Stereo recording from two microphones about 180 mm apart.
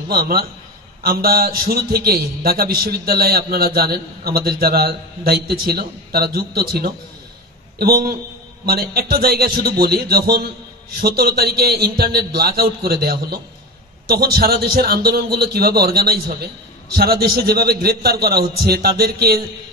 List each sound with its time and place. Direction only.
0.1 s a man's voice: 55° right (ahead or behind)